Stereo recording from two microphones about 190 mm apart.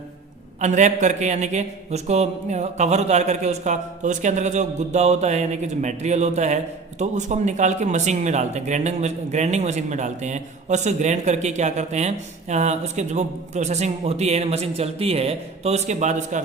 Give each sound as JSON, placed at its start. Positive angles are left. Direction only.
{"t": 0.6, "sound": "speech", "side_deg": -40}